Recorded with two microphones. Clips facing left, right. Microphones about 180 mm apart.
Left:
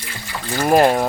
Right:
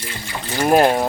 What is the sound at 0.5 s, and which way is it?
Speech, 5° right (ahead or behind).